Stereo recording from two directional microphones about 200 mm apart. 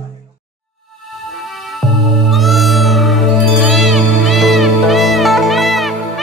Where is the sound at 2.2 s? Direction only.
Centre (ahead or behind).